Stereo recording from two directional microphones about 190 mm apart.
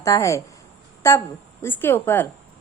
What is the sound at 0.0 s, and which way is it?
Speech, 15° left (ahead or behind).